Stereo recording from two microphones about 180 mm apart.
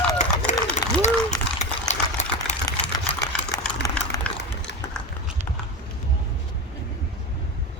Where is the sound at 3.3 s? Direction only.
5° left (ahead or behind).